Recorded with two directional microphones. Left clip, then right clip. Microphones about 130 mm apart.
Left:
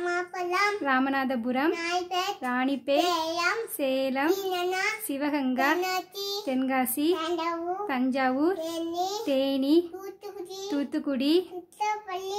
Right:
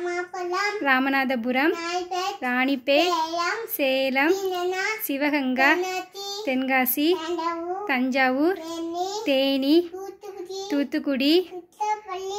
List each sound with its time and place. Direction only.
0.0 s child singing: 25° left (ahead or behind)
0.8 s a woman's voice: 10° right (ahead or behind)
1.8 s child singing: 25° left (ahead or behind)
2.4 s a woman's voice: 10° right (ahead or behind)
4.5 s a child's voice: 30° left (ahead or behind)
5.1 s a woman's voice: 10° right (ahead or behind)
11.8 s child singing: 20° left (ahead or behind)